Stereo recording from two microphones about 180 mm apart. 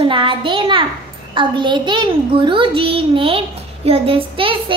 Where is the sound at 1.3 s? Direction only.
25° right (ahead or behind).